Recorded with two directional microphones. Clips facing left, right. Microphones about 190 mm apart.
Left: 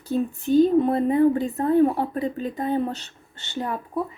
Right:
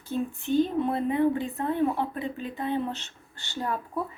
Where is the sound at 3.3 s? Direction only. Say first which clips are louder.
Left 3 dB; 20° left (ahead or behind).